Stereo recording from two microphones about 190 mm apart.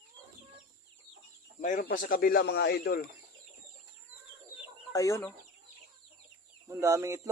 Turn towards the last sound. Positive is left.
turn(degrees=-15)  # may be behind; listen again after turning